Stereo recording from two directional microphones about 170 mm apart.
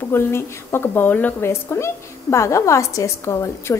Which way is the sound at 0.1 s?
15° left (ahead or behind).